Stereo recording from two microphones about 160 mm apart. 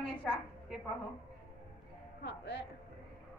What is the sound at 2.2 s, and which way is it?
Speech, 90° left.